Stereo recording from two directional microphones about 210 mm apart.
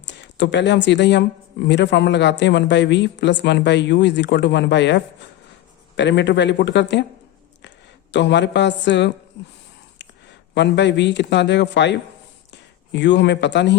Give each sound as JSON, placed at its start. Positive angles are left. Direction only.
{"t": 0.0, "sound": "speech", "side_deg": 55}
{"t": 8.1, "sound": "speech", "side_deg": 55}
{"t": 10.5, "sound": "speech", "side_deg": 55}